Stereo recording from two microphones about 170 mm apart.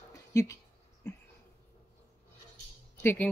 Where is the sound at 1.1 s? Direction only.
15° left (ahead or behind).